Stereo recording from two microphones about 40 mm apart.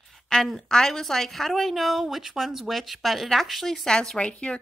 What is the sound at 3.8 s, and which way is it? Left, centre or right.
Speech, centre.